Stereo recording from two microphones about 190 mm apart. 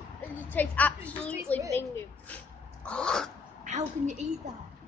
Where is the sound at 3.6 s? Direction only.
40° right (ahead or behind).